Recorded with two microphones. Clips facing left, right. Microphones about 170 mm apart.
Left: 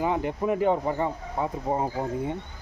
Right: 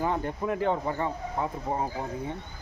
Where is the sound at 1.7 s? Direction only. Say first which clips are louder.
Left 4 dB; 25° left (ahead or behind).